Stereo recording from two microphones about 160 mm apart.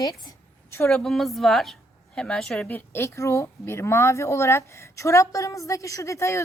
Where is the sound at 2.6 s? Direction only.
15° left (ahead or behind).